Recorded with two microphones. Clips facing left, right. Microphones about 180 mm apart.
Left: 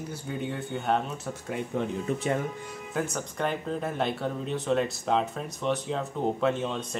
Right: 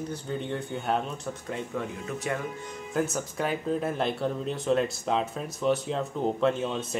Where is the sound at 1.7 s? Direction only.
25° left (ahead or behind).